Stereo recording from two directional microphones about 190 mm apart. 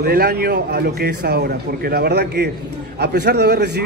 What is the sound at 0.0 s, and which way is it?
A man's voice, 55° right (ahead or behind).